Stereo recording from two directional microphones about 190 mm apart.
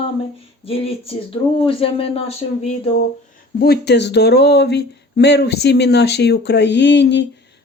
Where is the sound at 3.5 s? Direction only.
55° left (ahead or behind).